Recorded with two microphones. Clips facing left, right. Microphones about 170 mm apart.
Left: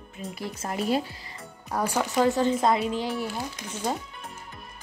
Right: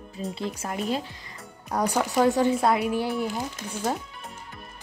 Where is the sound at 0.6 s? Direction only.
Centre (ahead or behind).